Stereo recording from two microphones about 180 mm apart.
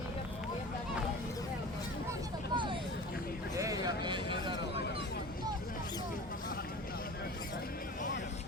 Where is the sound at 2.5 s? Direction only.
25° right (ahead or behind).